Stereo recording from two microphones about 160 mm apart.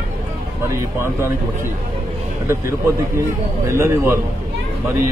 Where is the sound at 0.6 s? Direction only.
15° right (ahead or behind).